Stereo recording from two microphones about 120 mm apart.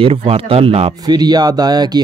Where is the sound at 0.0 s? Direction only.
50° right (ahead or behind).